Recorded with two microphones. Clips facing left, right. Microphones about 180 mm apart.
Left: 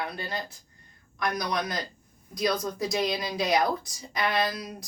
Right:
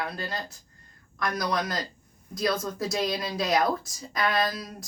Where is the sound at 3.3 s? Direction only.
20° left (ahead or behind).